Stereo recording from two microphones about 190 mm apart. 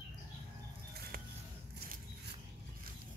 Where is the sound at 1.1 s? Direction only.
50° right (ahead or behind).